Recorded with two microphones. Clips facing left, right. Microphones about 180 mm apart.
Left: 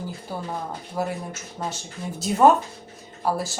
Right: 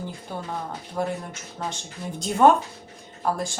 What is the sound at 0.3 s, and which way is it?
A woman's voice, 5° left (ahead or behind).